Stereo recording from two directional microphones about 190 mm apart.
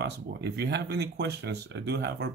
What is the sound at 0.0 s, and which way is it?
Speech, 60° right (ahead or behind).